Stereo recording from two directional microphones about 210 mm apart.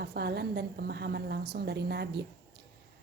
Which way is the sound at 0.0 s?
50° right (ahead or behind).